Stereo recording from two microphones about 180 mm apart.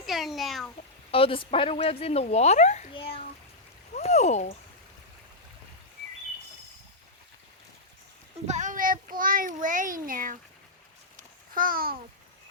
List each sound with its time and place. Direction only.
0.0 s meow: centre (ahead or behind)
1.1 s speech: 30° left (ahead or behind)
8.4 s a child's voice: 45° right (ahead or behind)
11.2 s babbling: 50° right (ahead or behind)